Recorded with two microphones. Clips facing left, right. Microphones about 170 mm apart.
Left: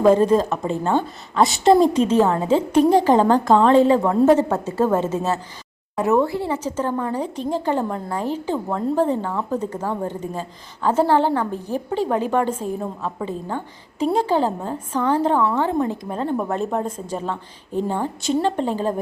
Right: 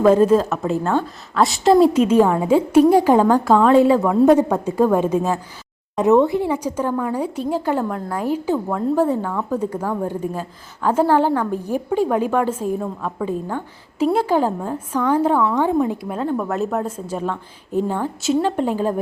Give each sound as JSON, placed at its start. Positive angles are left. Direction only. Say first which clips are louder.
{"t": 0.2, "sound": "a woman's voice", "louder": "right 2 dB", "side_deg": -5}
{"t": 4.5, "sound": "a woman's voice", "louder": "right 3 dB", "side_deg": -10}
{"t": 12.8, "sound": "a woman's voice", "louder": "right 1 dB", "side_deg": 5}
{"t": 14.0, "sound": "a woman's voice", "louder": "right 2 dB", "side_deg": -10}